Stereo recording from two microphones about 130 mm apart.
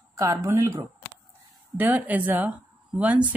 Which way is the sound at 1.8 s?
10° right (ahead or behind).